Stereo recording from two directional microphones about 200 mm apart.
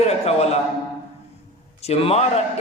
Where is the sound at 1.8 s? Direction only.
30° left (ahead or behind).